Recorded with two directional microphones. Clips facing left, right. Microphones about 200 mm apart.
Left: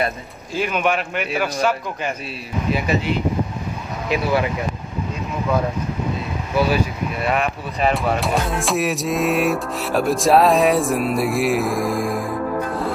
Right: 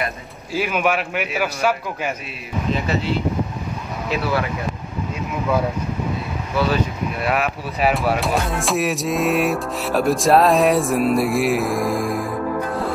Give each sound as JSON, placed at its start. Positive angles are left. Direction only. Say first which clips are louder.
{"t": 0.5, "sound": "a man's voice", "louder": "even", "side_deg": -5}
{"t": 2.7, "sound": "speech", "louder": "left 1 dB", "side_deg": 15}
{"t": 7.2, "sound": "speech", "louder": "left 1 dB", "side_deg": -5}